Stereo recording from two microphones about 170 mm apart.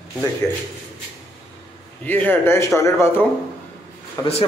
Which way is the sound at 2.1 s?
10° left (ahead or behind).